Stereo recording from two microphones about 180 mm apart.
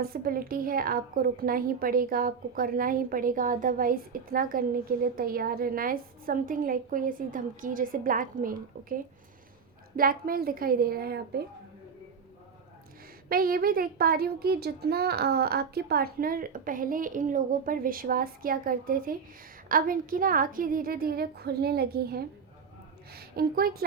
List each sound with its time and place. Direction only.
0.0 s a woman's voice: 55° right (ahead or behind)
13.2 s a woman's voice: 55° right (ahead or behind)